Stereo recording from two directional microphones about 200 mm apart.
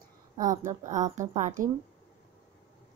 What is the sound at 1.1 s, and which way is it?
Speech, 40° right (ahead or behind).